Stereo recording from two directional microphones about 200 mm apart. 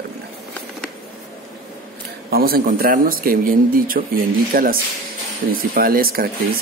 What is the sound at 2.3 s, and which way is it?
Speech, 50° right (ahead or behind).